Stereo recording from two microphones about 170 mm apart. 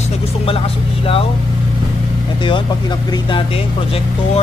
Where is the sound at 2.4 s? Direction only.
30° left (ahead or behind).